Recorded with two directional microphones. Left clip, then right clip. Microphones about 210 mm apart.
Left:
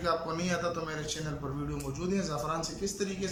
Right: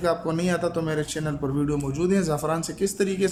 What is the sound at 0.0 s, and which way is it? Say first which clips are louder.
A man's voice: right 7 dB; 35° right (ahead or behind).